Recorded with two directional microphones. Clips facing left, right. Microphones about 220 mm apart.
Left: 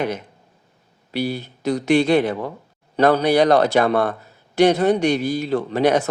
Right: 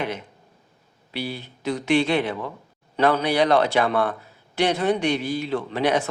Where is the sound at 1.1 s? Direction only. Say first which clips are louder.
Left 7 dB; 40° left (ahead or behind).